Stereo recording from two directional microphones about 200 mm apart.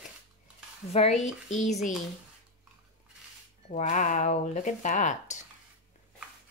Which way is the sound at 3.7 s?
40° left (ahead or behind).